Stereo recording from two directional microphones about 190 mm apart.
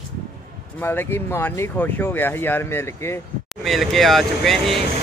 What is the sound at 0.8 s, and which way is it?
Speech, 10° left (ahead or behind).